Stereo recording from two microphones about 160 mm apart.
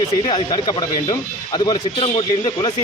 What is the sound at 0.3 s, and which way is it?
A man's voice, 25° left (ahead or behind).